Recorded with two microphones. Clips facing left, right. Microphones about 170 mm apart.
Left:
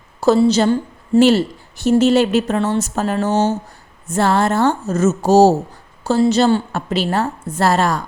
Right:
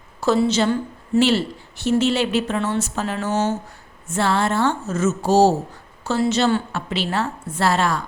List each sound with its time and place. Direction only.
0.2 s a woman's voice: 35° left (ahead or behind)